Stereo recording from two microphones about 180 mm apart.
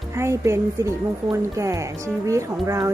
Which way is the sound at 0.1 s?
15° right (ahead or behind).